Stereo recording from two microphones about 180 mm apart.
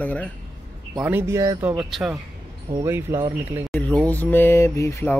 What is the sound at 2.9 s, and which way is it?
Speech, 15° right (ahead or behind).